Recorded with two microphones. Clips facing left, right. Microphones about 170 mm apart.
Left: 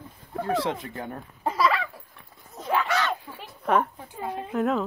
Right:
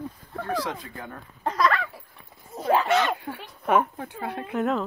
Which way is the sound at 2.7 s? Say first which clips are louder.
Right 4 dB; 35° right (ahead or behind).